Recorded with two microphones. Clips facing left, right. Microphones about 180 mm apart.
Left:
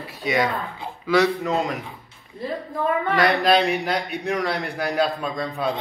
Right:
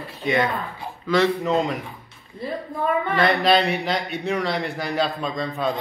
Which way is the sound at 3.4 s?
5° left (ahead or behind).